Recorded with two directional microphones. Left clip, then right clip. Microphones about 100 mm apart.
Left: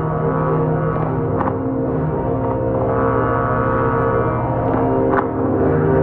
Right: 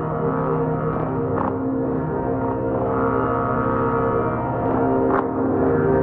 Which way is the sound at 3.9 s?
Centre (ahead or behind).